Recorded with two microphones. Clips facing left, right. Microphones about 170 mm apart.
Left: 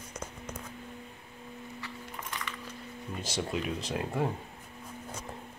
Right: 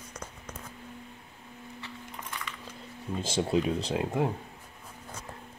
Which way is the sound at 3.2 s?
30° right (ahead or behind).